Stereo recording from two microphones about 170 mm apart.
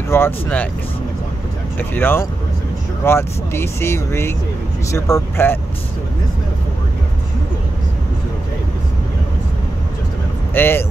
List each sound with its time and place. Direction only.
0.1 s speech: 10° left (ahead or behind)
1.8 s speech: 10° left (ahead or behind)
10.5 s speech: 15° left (ahead or behind)